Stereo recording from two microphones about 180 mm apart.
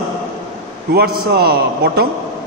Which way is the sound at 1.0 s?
60° right (ahead or behind).